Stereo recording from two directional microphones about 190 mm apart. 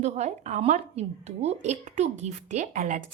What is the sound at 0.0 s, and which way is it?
A woman's voice, 35° right (ahead or behind).